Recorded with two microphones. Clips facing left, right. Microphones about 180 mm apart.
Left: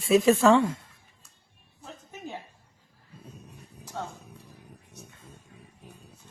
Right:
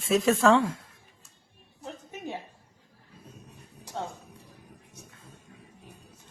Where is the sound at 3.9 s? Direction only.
25° right (ahead or behind).